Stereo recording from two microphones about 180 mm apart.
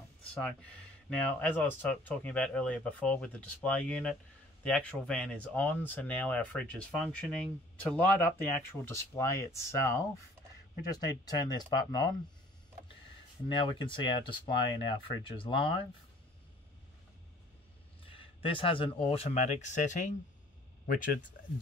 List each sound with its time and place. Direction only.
0.3 s speech: 5° left (ahead or behind); by 12.1 s 25° left (ahead or behind)
13.5 s speech: 25° left (ahead or behind)
18.0 s speech: 30° left (ahead or behind)
20.8 s speech: 55° left (ahead or behind)